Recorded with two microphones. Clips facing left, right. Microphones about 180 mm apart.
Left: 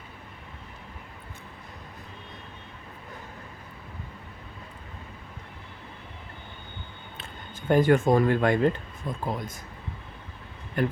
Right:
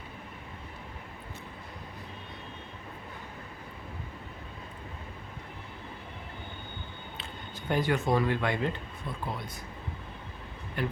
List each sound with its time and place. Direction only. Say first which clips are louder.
7.7 s speech: left 7 dB; 50° left (ahead or behind)
10.8 s speech: left 6 dB; 45° left (ahead or behind)